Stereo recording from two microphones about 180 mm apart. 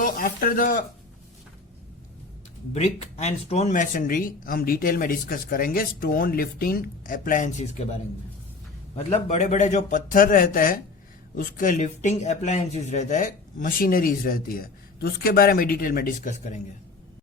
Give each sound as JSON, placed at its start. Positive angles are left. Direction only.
{"t": 0.0, "sound": "speech", "side_deg": 50}
{"t": 2.7, "sound": "speech", "side_deg": 35}
{"t": 9.0, "sound": "a man's voice", "side_deg": 35}